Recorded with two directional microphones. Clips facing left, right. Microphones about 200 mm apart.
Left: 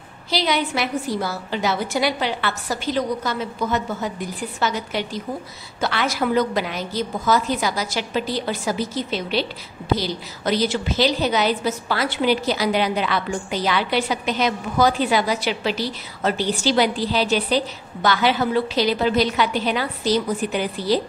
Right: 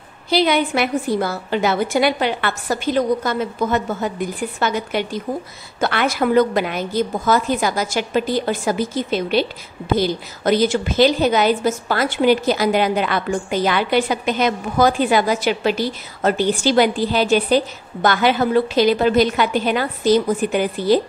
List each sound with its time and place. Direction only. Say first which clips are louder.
0.3 s a woman's voice: right 5 dB; 55° right (ahead or behind)